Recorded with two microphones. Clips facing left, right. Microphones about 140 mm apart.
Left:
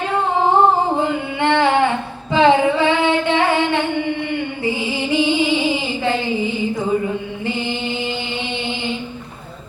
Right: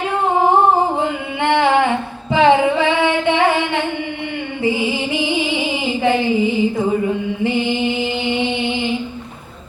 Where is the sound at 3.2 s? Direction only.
20° right (ahead or behind).